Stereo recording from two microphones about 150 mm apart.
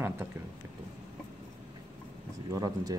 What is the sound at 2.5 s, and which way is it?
Speech, 25° right (ahead or behind).